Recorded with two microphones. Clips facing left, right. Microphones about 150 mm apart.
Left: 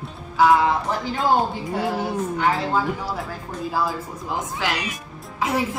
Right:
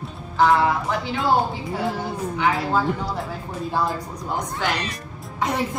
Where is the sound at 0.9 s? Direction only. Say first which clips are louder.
Even; 40° left (ahead or behind).